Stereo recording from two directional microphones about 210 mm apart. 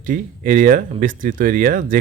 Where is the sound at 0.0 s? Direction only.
40° right (ahead or behind).